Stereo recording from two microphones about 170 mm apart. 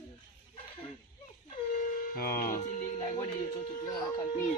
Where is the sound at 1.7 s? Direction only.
55° left (ahead or behind).